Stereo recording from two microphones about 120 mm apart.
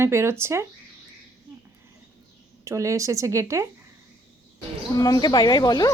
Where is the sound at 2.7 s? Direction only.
25° right (ahead or behind).